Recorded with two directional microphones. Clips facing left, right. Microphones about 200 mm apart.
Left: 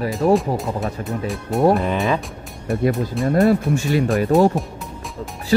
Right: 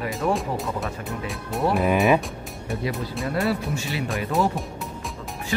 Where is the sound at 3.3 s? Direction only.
45° left (ahead or behind).